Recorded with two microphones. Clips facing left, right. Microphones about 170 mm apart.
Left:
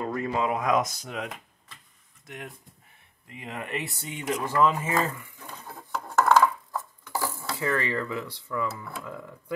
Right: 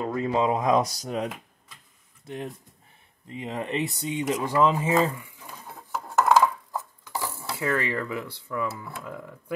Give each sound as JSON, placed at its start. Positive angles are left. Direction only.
{"t": 0.0, "sound": "speech", "side_deg": -20}
{"t": 5.5, "sound": "dishes", "side_deg": -5}
{"t": 7.5, "sound": "speech", "side_deg": -15}